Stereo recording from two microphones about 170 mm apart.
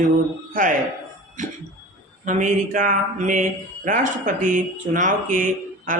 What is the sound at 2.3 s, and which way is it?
Speech, 45° right (ahead or behind).